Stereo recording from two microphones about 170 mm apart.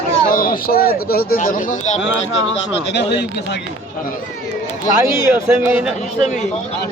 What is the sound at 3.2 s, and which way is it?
Speech, 80° left.